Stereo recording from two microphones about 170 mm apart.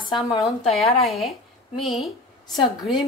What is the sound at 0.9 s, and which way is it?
A woman's voice, centre (ahead or behind).